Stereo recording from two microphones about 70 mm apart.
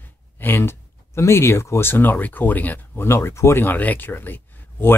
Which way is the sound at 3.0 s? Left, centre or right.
Left.